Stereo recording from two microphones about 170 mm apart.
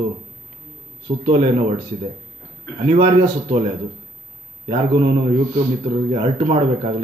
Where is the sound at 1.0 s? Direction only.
35° right (ahead or behind).